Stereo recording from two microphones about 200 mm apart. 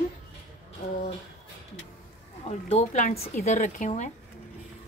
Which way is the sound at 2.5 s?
35° left (ahead or behind).